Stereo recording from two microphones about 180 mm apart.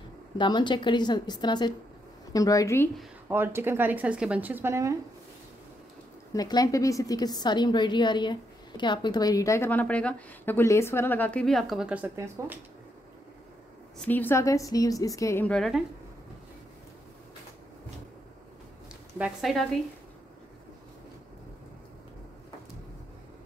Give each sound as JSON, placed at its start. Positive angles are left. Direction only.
{"t": 0.4, "sound": "a woman's voice", "side_deg": 25}
{"t": 3.0, "sound": "a woman's voice", "side_deg": -10}
{"t": 6.3, "sound": "a woman's voice", "side_deg": 20}
{"t": 13.9, "sound": "a woman's voice", "side_deg": 10}
{"t": 19.1, "sound": "speech", "side_deg": -5}